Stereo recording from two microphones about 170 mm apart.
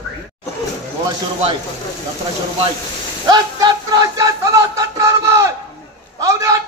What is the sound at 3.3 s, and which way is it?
Music, 25° right (ahead or behind).